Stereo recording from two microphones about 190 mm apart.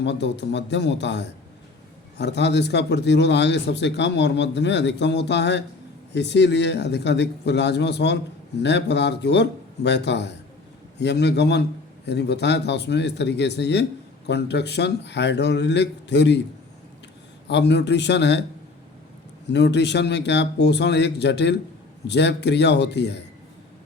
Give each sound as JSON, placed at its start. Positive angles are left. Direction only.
{"t": 0.0, "sound": "speech", "side_deg": 65}
{"t": 17.5, "sound": "speech", "side_deg": 65}
{"t": 19.5, "sound": "speech", "side_deg": 65}